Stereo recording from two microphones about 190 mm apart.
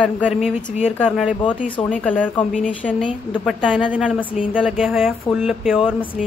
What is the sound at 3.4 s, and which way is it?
A woman's voice, 5° right (ahead or behind).